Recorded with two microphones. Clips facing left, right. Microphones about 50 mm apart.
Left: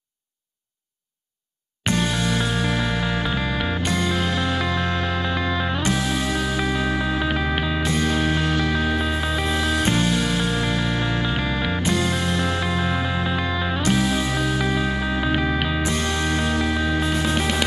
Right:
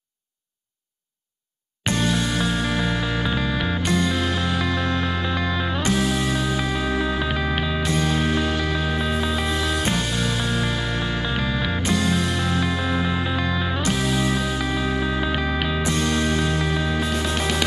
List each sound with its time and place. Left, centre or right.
1.9 s music: left
3.3 s music: centre
3.8 s music: left
5.3 s music: centre
6.3 s music: left
7.2 s music: centre
8.0 s music: left
11.1 s music: centre
11.8 s music: left
13.2 s music: centre
14.3 s music: left
15.1 s music: centre
16.0 s music: left
16.9 s music: centre